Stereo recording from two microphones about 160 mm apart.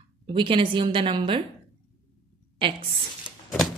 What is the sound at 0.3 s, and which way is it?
A woman's voice, 30° right (ahead or behind).